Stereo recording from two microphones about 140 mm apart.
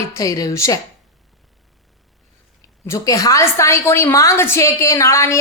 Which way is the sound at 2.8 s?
20° left (ahead or behind).